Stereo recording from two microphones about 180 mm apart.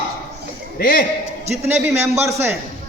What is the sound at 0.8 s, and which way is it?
Speech, 50° left (ahead or behind).